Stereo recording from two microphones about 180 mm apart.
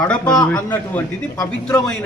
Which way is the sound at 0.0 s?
5° left (ahead or behind).